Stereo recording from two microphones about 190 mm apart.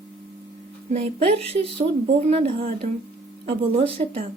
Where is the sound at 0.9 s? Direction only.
30° right (ahead or behind).